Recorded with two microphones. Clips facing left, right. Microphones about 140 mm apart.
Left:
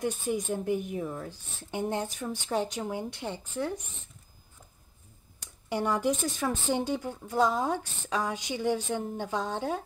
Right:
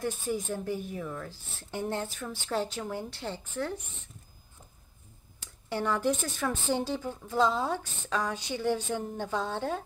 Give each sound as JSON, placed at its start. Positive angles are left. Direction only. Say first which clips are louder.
{"t": 0.0, "sound": "a woman's voice", "louder": "left 2 dB", "side_deg": 20}
{"t": 5.4, "sound": "speech", "louder": "left 2 dB", "side_deg": 15}